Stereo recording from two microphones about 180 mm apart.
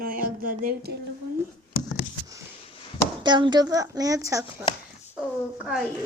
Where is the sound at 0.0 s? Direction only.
50° right (ahead or behind).